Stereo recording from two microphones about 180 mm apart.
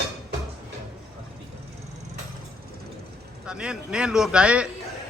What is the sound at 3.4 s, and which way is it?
Speech, 5° right (ahead or behind).